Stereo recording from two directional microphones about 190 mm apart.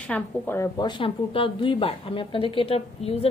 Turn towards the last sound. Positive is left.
turn(degrees=30)  # may be behind; listen again after turning